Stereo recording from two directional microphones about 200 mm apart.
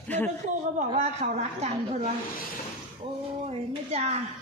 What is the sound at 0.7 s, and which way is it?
A woman's voice, 35° right (ahead or behind).